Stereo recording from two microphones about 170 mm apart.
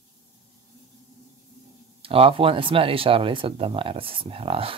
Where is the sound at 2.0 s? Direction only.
35° right (ahead or behind).